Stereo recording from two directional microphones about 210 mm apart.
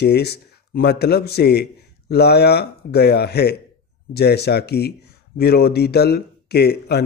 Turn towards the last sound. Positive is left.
turn(degrees=50)  # may be behind; listen again after turning